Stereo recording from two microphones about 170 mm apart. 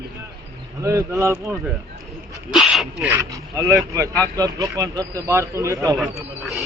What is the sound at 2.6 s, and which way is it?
Speech, centre (ahead or behind).